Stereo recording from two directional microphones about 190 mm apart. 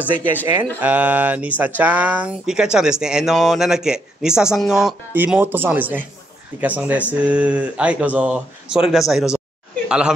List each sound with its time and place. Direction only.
0.7 s speech: 10° right (ahead or behind)